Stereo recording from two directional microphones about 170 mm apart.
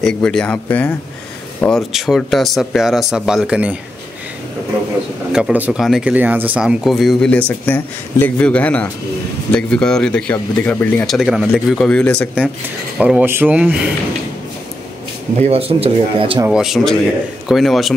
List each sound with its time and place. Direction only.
0.0 s speech: 5° left (ahead or behind)
5.3 s speech: 5° right (ahead or behind); by 11.1 s 10° left (ahead or behind)
11.1 s speech: 5° right (ahead or behind)
13.0 s speech: 10° right (ahead or behind)
15.3 s speech: 35° right (ahead or behind)
16.4 s speech: 5° right (ahead or behind)